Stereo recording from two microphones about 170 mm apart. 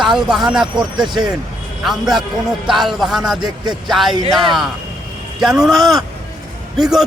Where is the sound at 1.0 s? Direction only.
25° right (ahead or behind).